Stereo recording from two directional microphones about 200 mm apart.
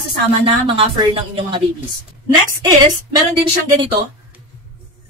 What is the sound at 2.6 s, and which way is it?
Speech, 20° right (ahead or behind).